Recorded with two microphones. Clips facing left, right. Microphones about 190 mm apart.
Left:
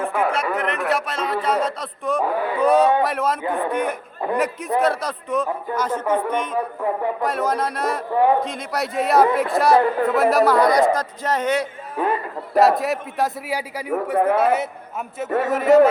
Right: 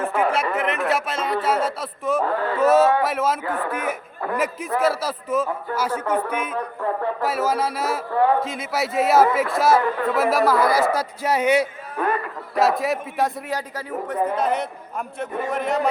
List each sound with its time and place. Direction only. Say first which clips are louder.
0.0 s a sound: even; 5° right (ahead or behind)
2.2 s a man's voice: left 1 dB; 15° left (ahead or behind)
2.6 s a man's voice: even; 5° right (ahead or behind)
3.4 s a man's voice: left 3 dB; 15° left (ahead or behind)
3.7 s a man's voice: left 3 dB; 5° right (ahead or behind)